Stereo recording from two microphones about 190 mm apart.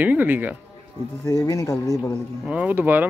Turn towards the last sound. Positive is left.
turn(degrees=-10)  # may be behind; listen again after turning